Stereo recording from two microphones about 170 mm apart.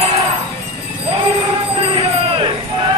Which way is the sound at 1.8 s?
30° right (ahead or behind).